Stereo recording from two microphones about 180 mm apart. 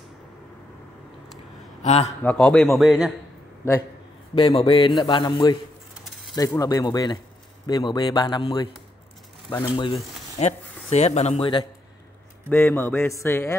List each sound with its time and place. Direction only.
1.8 s a man's voice: 35° left (ahead or behind)
2.2 s a man's voice: 5° left (ahead or behind)
4.4 s a man's voice: 30° left (ahead or behind)
10.4 s speech: 35° left (ahead or behind)
12.4 s a man's voice: 10° left (ahead or behind)